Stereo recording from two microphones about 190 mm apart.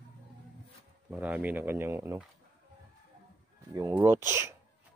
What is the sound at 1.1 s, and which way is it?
Speech, 10° right (ahead or behind).